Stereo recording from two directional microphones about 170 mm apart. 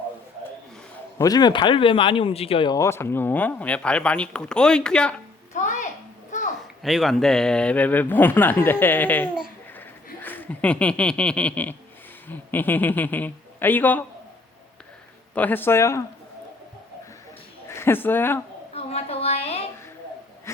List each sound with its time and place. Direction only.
1.2 s speech: 25° left (ahead or behind)
2.7 s a man's voice: 15° left (ahead or behind)
5.5 s a sound: 45° left (ahead or behind)
6.8 s a man's voice: centre (ahead or behind)
15.4 s a man's voice: 10° left (ahead or behind)
17.7 s speech: 15° left (ahead or behind)
18.7 s a sound: 35° left (ahead or behind)